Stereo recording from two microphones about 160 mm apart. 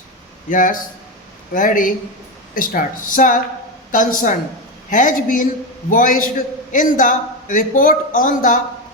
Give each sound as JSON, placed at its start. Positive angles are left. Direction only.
{"t": 0.5, "sound": "a man's voice", "side_deg": 55}